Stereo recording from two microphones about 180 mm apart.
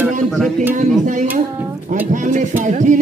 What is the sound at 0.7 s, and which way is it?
Speech, 45° right (ahead or behind).